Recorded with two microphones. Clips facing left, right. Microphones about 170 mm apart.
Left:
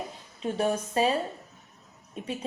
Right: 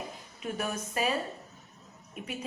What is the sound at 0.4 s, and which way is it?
Speech, 30° left (ahead or behind).